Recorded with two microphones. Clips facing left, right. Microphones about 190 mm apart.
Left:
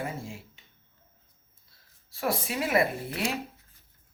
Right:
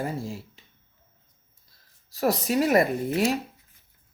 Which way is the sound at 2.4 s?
40° right (ahead or behind).